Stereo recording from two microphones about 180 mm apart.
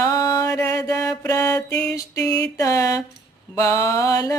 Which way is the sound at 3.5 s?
15° left (ahead or behind).